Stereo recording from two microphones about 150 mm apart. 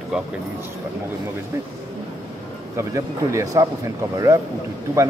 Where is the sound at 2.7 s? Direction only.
20° right (ahead or behind).